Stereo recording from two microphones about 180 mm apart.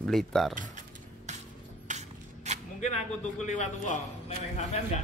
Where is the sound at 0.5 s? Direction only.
45° right (ahead or behind).